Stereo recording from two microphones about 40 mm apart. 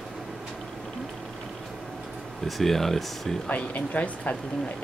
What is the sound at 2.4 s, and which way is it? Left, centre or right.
Speech, centre.